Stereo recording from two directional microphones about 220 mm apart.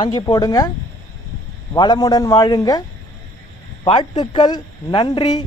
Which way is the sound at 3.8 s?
20° left (ahead or behind).